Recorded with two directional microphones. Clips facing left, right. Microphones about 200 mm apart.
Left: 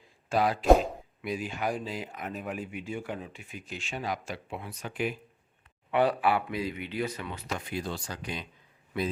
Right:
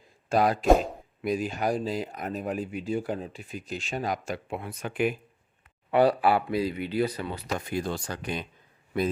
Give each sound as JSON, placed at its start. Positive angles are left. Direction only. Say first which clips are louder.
{"t": 0.3, "sound": "speech", "louder": "right 1 dB", "side_deg": -45}
{"t": 5.9, "sound": "speech", "louder": "right 4 dB", "side_deg": -35}